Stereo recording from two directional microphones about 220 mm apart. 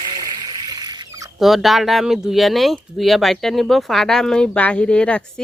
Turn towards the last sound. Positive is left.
turn(degrees=5)  # may be behind; listen again after turning